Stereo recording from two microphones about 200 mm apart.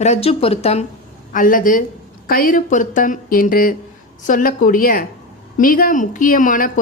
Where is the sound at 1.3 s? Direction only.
45° left (ahead or behind).